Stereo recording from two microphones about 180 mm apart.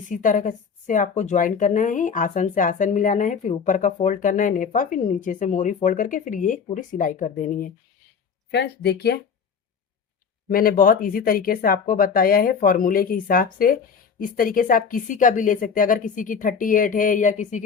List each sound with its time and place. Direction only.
0.1 s a woman's voice: 45° left (ahead or behind)
8.4 s speech: 65° left (ahead or behind)
10.5 s a woman's voice: 55° left (ahead or behind)